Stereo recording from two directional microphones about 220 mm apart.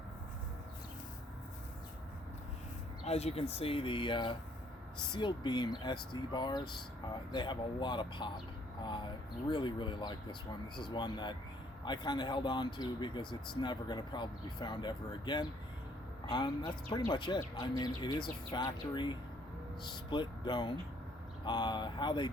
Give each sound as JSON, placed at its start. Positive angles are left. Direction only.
{"t": 3.1, "sound": "speech", "side_deg": 30}